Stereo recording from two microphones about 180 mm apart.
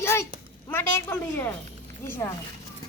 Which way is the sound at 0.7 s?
10° left (ahead or behind).